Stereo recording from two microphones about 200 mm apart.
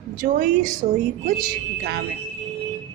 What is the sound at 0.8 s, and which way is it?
Speech, 30° right (ahead or behind).